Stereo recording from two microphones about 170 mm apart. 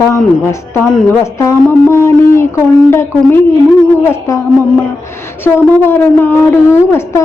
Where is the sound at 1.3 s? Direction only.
15° left (ahead or behind).